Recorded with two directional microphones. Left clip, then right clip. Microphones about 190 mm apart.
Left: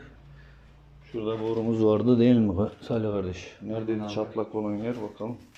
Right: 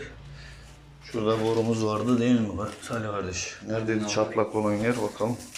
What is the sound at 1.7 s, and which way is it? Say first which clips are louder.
Speech: left 4 dB; 35° left (ahead or behind).